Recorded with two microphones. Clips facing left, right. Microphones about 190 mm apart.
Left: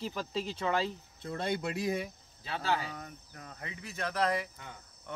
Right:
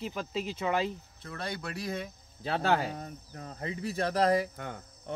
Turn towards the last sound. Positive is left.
turn(degrees=-55)  # may be behind; listen again after turning